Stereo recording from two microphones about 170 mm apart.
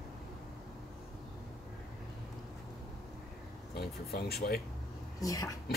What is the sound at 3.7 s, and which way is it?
Speech, 65° left (ahead or behind).